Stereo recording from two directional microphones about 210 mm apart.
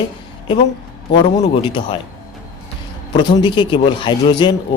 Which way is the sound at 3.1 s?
20° left (ahead or behind).